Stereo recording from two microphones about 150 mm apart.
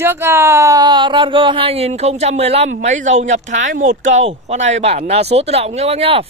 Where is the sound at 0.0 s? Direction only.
15° right (ahead or behind).